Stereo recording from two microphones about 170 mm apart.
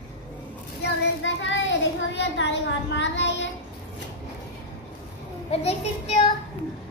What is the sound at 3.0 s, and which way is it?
Child singing, 90° left.